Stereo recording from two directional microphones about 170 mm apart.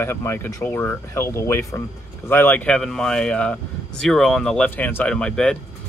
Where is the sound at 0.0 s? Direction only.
15° left (ahead or behind).